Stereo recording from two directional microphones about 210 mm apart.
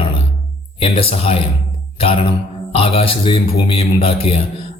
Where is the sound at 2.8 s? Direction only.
25° left (ahead or behind).